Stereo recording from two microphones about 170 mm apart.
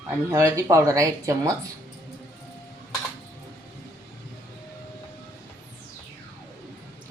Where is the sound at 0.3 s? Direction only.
15° right (ahead or behind).